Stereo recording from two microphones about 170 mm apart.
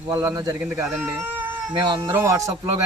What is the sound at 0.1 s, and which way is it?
Speech, 15° right (ahead or behind).